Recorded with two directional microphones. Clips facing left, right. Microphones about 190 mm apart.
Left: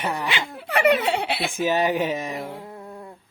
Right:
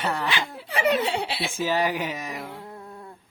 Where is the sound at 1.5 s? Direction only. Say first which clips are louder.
Left 3 dB; 20° left (ahead or behind).